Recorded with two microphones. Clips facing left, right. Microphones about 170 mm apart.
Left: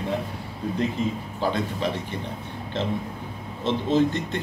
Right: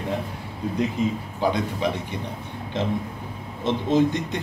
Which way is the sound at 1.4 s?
15° right (ahead or behind).